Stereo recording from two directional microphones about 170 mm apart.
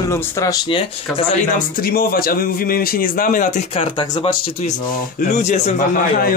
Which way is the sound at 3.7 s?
30° left (ahead or behind).